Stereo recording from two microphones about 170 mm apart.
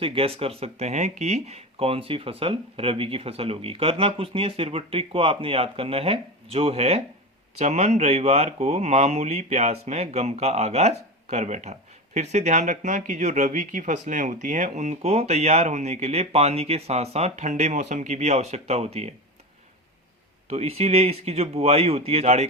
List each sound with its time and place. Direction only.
0.0 s speech: 35° right (ahead or behind)
20.5 s speech: 35° right (ahead or behind)